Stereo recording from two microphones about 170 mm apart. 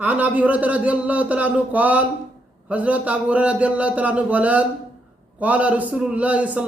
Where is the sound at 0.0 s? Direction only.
10° right (ahead or behind).